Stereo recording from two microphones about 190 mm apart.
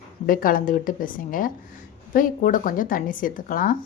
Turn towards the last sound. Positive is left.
turn(degrees=45)  # may be behind; listen again after turning